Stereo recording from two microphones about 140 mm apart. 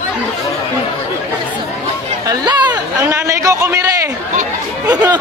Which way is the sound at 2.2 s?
30° right (ahead or behind).